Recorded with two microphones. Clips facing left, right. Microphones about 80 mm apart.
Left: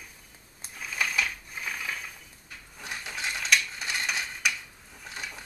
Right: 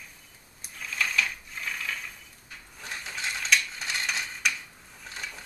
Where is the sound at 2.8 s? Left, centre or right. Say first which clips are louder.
Even; centre.